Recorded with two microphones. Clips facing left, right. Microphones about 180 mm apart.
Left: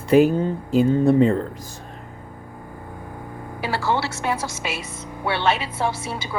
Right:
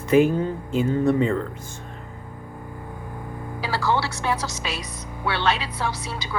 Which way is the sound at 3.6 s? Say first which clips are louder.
Left 1 dB; 25° left (ahead or behind).